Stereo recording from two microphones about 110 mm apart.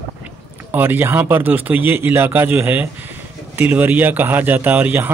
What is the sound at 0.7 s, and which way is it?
Speech, 15° right (ahead or behind).